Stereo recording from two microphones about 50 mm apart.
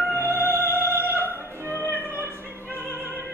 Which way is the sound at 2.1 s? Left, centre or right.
Right.